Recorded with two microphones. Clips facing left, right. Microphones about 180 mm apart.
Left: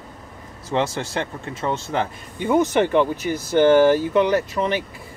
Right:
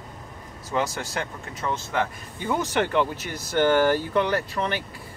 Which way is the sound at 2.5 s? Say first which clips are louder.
Left 7 dB; 20° left (ahead or behind).